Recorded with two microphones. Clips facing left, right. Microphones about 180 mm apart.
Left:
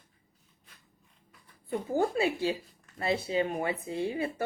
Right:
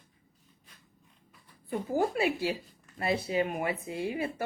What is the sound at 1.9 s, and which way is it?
Speech, 25° left (ahead or behind).